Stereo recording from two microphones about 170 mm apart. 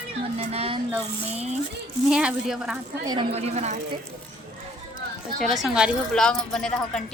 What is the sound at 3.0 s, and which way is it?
Speech, 25° right (ahead or behind).